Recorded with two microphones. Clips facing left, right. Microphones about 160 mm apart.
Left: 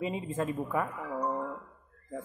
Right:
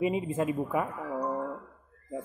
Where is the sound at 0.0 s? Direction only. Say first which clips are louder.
Right 4 dB; 15° right (ahead or behind).